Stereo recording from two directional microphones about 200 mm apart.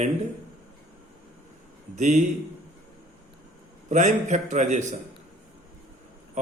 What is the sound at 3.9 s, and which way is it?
A man's voice, 35° right (ahead or behind).